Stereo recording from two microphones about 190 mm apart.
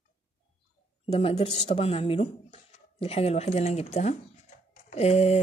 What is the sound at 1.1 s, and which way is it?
Speech, 35° left (ahead or behind).